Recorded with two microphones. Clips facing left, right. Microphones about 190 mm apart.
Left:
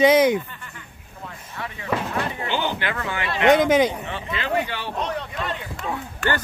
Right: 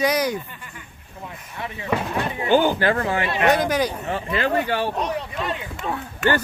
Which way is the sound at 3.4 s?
20° left (ahead or behind).